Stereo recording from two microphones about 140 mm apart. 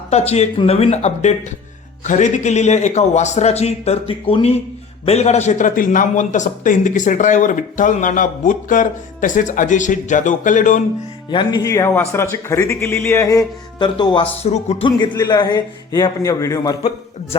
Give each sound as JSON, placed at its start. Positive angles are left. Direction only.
{"t": 0.1, "sound": "a man's voice", "side_deg": 50}
{"t": 11.3, "sound": "speech", "side_deg": 35}
{"t": 11.6, "sound": "speech", "side_deg": 20}
{"t": 14.4, "sound": "speech", "side_deg": 50}
{"t": 14.8, "sound": "speech", "side_deg": 30}